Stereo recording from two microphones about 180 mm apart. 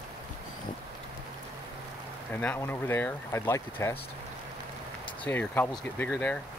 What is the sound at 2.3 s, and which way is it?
Speech, 10° left (ahead or behind).